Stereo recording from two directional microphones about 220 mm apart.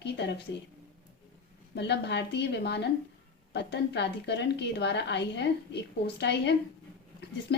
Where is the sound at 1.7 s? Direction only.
50° left (ahead or behind).